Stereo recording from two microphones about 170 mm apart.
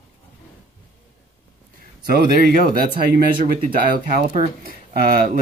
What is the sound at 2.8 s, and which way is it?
Speech, 65° right (ahead or behind).